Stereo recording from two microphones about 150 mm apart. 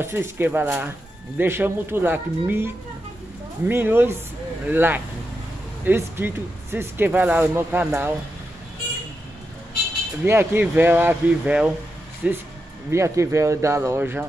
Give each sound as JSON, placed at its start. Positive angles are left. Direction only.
{"t": 0.0, "sound": "speech", "side_deg": -15}
{"t": 10.2, "sound": "speech", "side_deg": -15}